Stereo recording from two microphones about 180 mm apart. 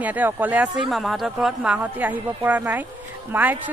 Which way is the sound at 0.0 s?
10° right (ahead or behind).